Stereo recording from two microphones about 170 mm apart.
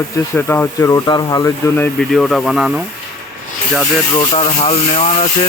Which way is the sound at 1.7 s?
10° left (ahead or behind).